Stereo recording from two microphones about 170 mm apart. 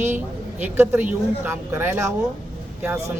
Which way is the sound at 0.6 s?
15° right (ahead or behind).